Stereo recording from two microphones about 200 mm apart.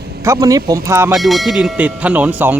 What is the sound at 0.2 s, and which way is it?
Speech, 15° right (ahead or behind).